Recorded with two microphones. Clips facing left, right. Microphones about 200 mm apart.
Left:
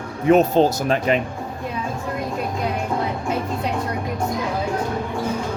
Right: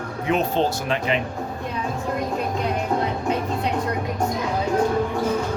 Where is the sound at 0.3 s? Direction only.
45° left (ahead or behind).